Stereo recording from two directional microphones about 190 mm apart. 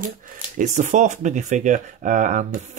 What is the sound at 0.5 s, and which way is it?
Speech, 40° right (ahead or behind).